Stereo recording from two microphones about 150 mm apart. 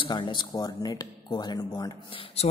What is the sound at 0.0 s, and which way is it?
Speech, 30° left (ahead or behind).